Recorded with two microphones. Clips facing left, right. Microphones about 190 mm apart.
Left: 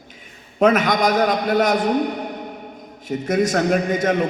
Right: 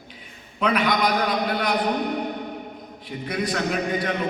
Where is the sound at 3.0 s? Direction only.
45° left (ahead or behind).